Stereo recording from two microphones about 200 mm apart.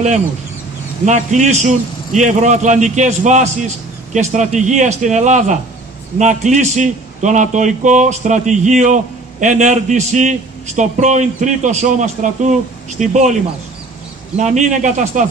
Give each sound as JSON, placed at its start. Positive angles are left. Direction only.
{"t": 1.0, "sound": "a man's voice", "side_deg": -35}